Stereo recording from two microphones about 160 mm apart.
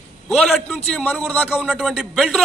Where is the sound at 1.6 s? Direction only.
5° right (ahead or behind).